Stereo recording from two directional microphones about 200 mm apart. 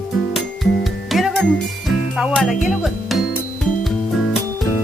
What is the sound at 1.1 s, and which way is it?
Music, centre (ahead or behind).